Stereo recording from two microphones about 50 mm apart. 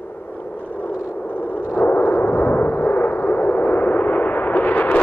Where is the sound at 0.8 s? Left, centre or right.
Left.